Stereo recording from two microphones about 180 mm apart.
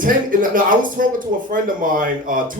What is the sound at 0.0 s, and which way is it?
A man's voice, 50° right (ahead or behind).